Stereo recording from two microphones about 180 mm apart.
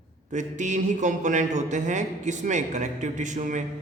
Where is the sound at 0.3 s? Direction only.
45° right (ahead or behind).